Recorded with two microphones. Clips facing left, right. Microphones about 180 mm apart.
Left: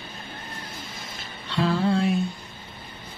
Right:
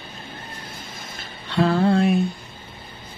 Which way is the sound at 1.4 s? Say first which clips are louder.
Right 4 dB; 55° right (ahead or behind).